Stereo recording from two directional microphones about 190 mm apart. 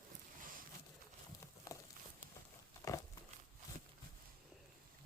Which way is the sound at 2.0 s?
50° right (ahead or behind).